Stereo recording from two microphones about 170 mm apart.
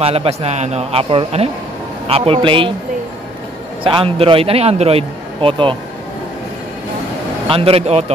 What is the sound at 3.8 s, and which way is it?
A man's voice, 30° right (ahead or behind).